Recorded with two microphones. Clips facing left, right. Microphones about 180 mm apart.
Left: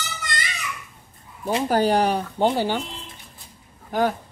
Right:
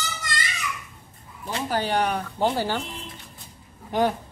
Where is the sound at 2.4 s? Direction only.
15° left (ahead or behind).